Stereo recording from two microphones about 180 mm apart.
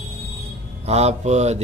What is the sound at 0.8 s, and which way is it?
Speech, 35° right (ahead or behind).